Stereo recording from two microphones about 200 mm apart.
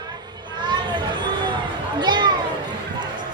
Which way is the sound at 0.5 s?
20° right (ahead or behind).